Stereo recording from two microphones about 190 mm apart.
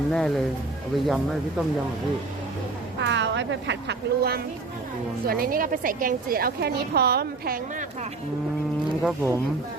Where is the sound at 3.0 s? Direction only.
70° right (ahead or behind); by 7.9 s 50° right (ahead or behind).